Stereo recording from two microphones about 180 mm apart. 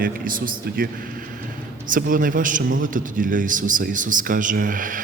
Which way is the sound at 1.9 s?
50° right (ahead or behind).